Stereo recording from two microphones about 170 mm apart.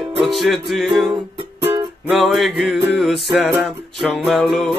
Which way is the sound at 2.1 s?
Centre (ahead or behind).